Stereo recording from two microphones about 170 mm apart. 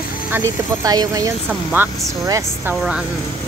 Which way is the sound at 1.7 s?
10° right (ahead or behind).